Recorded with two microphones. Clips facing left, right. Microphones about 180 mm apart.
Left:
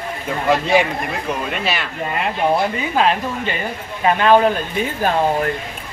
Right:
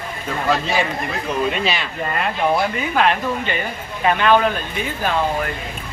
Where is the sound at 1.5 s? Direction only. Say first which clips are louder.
Right 1 dB; 5° left (ahead or behind).